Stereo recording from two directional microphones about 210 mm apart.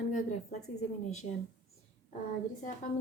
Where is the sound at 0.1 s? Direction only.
35° left (ahead or behind).